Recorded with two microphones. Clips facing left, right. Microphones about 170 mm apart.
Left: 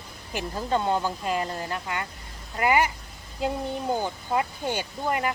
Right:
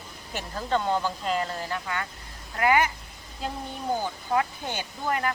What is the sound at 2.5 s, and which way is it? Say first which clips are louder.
Speech: even; 10° left (ahead or behind).